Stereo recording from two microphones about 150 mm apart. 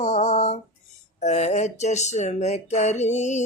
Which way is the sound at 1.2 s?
50° left (ahead or behind).